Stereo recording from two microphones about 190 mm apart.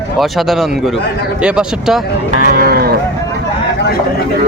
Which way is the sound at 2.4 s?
50° right (ahead or behind).